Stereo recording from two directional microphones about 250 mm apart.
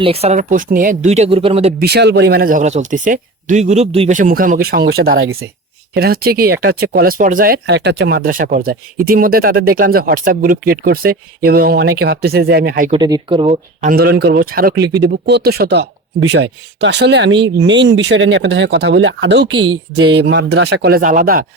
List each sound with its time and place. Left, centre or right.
0.0 s speech: right
1.8 s speech: right
5.2 s speech: right
5.9 s speech: right
12.9 s speech: centre
13.9 s speech: right
19.5 s speech: centre
20.1 s speech: right